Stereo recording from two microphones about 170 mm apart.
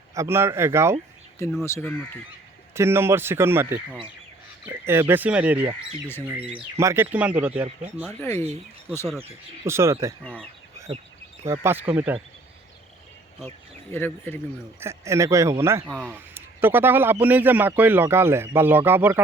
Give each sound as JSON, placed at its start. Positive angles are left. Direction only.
{"t": 0.1, "sound": "speech", "side_deg": -15}
{"t": 1.6, "sound": "speech", "side_deg": 15}
{"t": 2.7, "sound": "speech", "side_deg": -15}
{"t": 6.7, "sound": "speech", "side_deg": -15}
{"t": 8.2, "sound": "speech", "side_deg": 15}
{"t": 9.6, "sound": "speech", "side_deg": -15}
{"t": 11.4, "sound": "speech", "side_deg": -15}
{"t": 13.9, "sound": "speech", "side_deg": 10}
{"t": 14.8, "sound": "speech", "side_deg": -15}